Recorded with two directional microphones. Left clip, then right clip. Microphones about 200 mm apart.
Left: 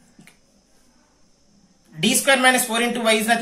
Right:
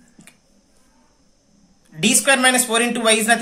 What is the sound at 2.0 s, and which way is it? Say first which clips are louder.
Speech: right 1 dB; 25° right (ahead or behind).